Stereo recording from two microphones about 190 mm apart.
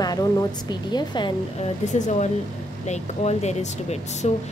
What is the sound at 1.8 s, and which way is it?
Speech, 40° left (ahead or behind).